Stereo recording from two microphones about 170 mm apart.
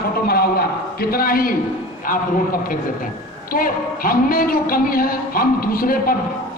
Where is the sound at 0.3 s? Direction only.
60° left (ahead or behind).